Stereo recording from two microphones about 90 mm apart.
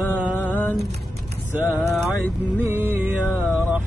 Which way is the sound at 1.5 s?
20° right (ahead or behind).